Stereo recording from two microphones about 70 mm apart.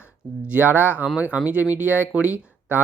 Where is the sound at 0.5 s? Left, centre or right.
Right.